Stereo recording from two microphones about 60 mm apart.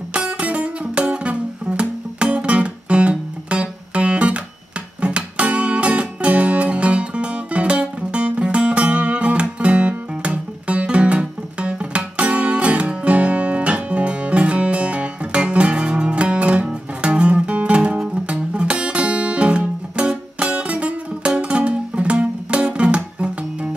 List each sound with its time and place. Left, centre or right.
0.1 s music: centre